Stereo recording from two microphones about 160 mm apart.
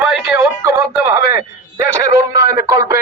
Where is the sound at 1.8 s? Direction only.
15° right (ahead or behind).